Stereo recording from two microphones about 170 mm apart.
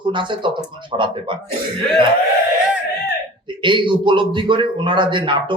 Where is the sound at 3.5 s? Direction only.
30° right (ahead or behind).